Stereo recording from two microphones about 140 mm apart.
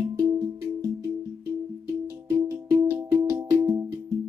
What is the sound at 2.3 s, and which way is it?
Music, 20° right (ahead or behind).